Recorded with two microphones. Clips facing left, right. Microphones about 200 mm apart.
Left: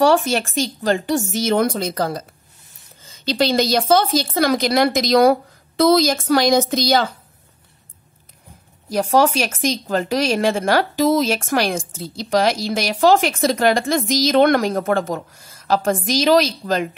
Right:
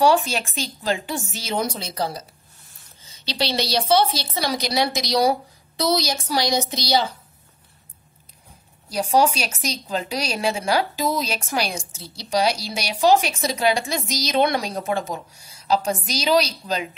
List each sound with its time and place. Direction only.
0.0 s a woman's voice: 45° left (ahead or behind)
8.9 s a woman's voice: 50° left (ahead or behind)